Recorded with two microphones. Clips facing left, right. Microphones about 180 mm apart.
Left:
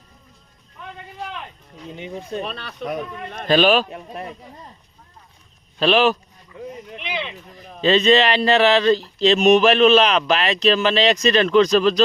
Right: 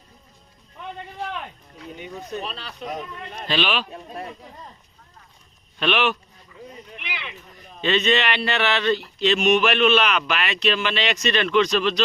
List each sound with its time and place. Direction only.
2.0 s speech: 25° left (ahead or behind)
2.4 s speech: 55° left (ahead or behind)
5.8 s speech: 35° left (ahead or behind)
7.0 s a sound: 20° left (ahead or behind)
7.5 s speech: 35° left (ahead or behind)